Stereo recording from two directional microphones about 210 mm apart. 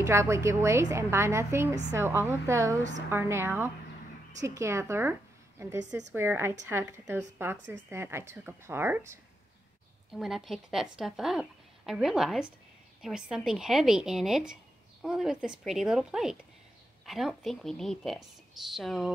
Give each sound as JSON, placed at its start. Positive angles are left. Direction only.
{"t": 0.0, "sound": "speech", "side_deg": -15}
{"t": 10.1, "sound": "a woman's voice", "side_deg": 0}